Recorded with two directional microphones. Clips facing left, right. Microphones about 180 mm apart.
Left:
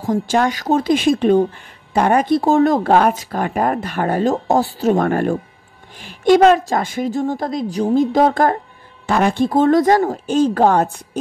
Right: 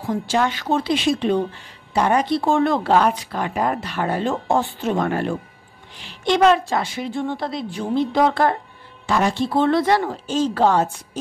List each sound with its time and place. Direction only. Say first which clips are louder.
0.0 s speech: left 4 dB; 45° left (ahead or behind)